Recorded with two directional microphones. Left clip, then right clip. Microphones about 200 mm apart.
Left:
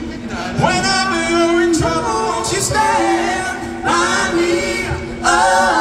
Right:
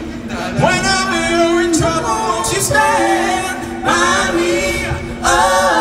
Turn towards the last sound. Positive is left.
turn(degrees=-30)  # may be behind; listen again after turning